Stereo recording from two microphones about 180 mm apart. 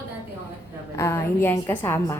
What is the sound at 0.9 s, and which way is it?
A woman's voice, 15° left (ahead or behind).